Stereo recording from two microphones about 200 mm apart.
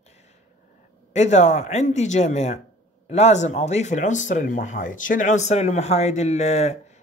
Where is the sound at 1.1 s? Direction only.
35° left (ahead or behind).